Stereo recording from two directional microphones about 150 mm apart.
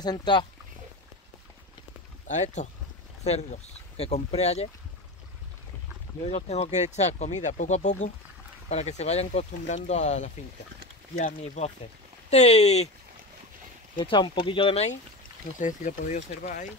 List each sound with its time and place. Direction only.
0.0 s speech: 30° left (ahead or behind)
2.2 s speech: 50° left (ahead or behind)
6.2 s speech: 45° left (ahead or behind)
13.9 s speech: 30° left (ahead or behind)
15.6 s speech: 60° left (ahead or behind)